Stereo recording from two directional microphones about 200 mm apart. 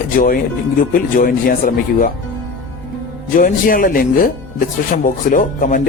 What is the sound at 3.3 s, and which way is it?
Speech, 45° left (ahead or behind).